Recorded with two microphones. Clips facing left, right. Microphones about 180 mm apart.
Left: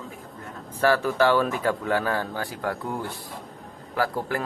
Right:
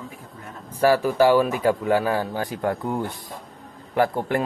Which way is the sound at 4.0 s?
20° right (ahead or behind).